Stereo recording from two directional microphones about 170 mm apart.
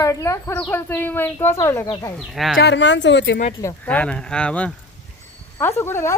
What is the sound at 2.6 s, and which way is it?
Speech, 90° left.